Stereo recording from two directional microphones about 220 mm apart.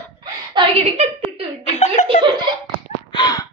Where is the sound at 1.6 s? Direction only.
30° left (ahead or behind).